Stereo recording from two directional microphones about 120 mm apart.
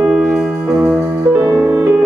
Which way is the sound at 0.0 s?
5° right (ahead or behind).